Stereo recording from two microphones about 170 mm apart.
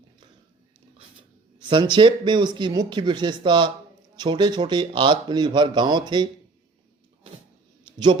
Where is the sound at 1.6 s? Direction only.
30° right (ahead or behind).